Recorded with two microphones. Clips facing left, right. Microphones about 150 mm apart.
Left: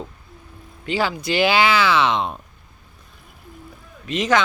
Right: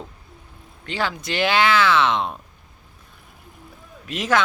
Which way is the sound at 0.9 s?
5° left (ahead or behind).